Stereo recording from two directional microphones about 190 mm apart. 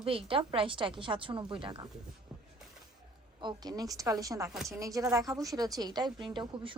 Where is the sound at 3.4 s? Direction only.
20° right (ahead or behind).